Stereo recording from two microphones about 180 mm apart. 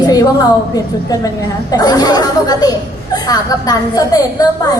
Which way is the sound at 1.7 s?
20° left (ahead or behind).